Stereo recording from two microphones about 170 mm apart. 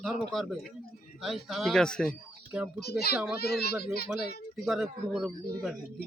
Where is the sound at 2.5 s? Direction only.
10° right (ahead or behind).